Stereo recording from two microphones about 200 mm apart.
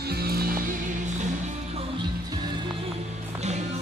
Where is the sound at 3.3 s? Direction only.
35° right (ahead or behind).